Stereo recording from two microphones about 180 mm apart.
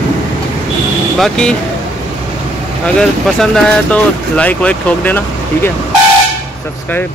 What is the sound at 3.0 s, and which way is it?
Speech, 5° left (ahead or behind).